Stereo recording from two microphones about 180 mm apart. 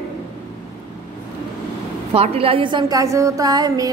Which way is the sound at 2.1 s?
35° right (ahead or behind).